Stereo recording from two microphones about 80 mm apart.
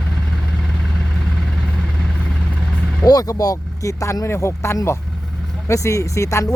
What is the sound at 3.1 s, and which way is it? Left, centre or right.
Speech, left.